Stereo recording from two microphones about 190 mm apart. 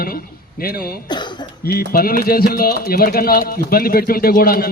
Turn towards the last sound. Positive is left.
turn(degrees=50)  # may be behind; listen again after turning